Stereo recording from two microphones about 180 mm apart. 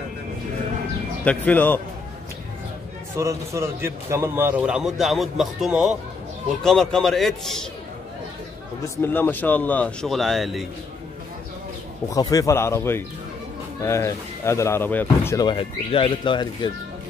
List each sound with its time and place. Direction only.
1.2 s speech: 10° left (ahead or behind)
3.2 s a man's voice: 15° right (ahead or behind); by 7.6 s centre (ahead or behind)
8.9 s speech: 10° left (ahead or behind)
12.1 s speech: 20° left (ahead or behind)
15.3 s speech: 25° left (ahead or behind)